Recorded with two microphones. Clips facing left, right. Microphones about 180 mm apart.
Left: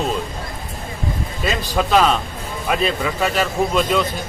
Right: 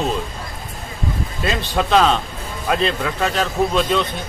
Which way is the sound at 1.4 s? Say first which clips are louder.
Even; 5° left (ahead or behind).